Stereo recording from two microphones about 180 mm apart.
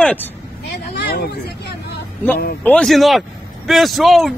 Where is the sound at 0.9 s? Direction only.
70° left (ahead or behind).